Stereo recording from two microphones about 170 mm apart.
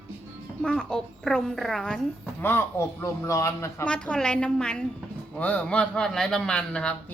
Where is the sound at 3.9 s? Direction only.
5° left (ahead or behind).